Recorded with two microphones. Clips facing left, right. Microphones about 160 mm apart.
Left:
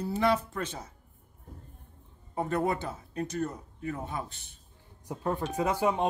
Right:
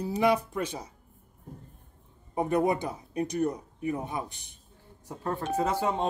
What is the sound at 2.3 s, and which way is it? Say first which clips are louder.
Speech: right 3 dB; 15° right (ahead or behind).